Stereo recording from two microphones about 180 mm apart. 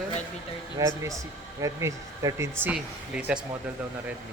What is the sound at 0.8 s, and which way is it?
Speech, 15° right (ahead or behind).